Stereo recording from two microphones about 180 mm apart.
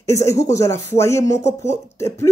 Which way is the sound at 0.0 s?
15° left (ahead or behind).